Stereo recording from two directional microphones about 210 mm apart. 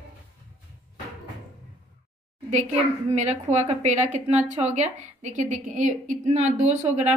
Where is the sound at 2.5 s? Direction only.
35° right (ahead or behind).